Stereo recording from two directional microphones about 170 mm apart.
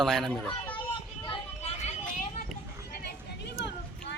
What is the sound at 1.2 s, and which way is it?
Vehicle, 35° left (ahead or behind).